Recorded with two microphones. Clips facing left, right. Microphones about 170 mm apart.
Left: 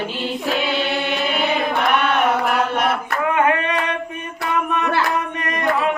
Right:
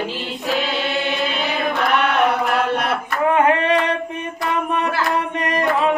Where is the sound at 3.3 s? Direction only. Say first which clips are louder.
Right 3 dB; 30° right (ahead or behind).